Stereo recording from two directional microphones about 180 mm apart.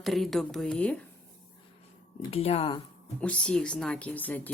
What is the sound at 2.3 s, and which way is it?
Speech, 35° left (ahead or behind).